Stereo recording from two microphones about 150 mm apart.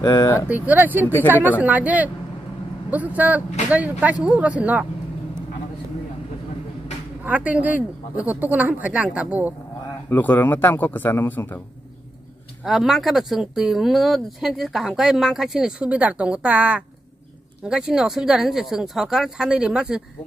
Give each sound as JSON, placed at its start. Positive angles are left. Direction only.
{"t": 0.0, "sound": "speech", "side_deg": 25}
{"t": 0.5, "sound": "speech", "side_deg": -10}
{"t": 1.0, "sound": "speech", "side_deg": 15}
{"t": 1.6, "sound": "speech", "side_deg": -10}
{"t": 7.2, "sound": "speech", "side_deg": -10}
{"t": 10.0, "sound": "speech", "side_deg": 10}
{"t": 12.6, "sound": "speech", "side_deg": 0}